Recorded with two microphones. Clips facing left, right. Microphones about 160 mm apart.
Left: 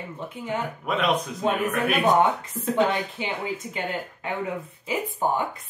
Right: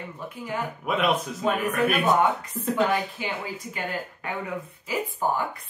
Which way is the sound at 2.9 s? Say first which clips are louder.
Right 1 dB; 20° left (ahead or behind).